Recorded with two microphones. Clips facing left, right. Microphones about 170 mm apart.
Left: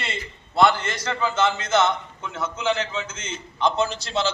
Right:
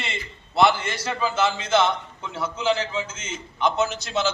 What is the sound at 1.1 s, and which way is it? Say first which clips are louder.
A man's voice: left 1 dB; 10° right (ahead or behind).